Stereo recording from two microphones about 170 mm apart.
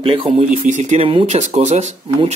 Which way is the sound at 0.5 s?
45° right (ahead or behind).